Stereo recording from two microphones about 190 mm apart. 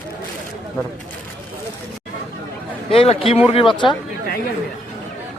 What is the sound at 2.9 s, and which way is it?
A man's voice, 30° left (ahead or behind).